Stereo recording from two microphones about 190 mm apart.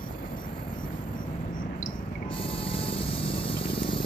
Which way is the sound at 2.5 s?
30° left (ahead or behind).